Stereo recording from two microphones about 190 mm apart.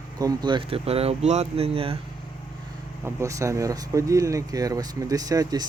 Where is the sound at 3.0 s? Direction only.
15° right (ahead or behind).